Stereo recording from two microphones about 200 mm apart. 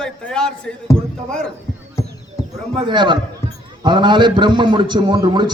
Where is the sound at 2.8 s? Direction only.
25° right (ahead or behind).